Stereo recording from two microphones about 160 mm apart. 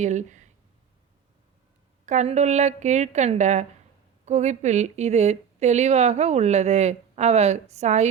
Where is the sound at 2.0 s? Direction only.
45° right (ahead or behind).